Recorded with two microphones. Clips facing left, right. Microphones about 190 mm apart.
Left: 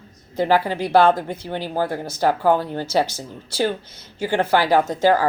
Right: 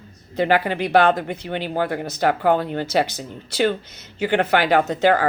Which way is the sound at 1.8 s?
65° right (ahead or behind).